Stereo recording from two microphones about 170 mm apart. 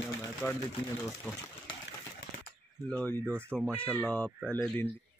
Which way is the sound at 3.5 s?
Centre (ahead or behind).